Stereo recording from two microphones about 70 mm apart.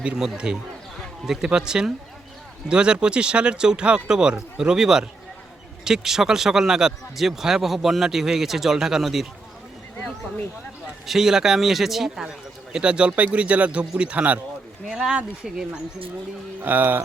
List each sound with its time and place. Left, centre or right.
0.2 s speech: centre
11.0 s speech: centre
12.7 s speech: centre
16.6 s music: right